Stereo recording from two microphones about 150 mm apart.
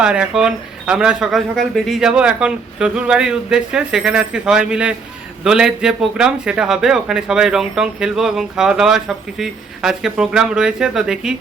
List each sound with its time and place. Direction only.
0.0 s a man's voice: 5° right (ahead or behind)